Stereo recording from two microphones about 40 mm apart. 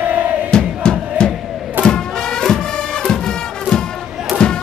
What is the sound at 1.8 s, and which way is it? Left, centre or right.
Music, centre.